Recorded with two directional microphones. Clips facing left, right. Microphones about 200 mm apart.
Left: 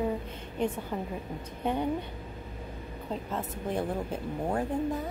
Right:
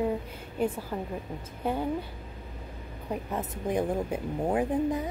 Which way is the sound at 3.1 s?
15° right (ahead or behind).